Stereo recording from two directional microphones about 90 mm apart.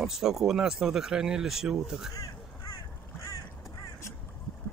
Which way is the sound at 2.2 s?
40° left (ahead or behind).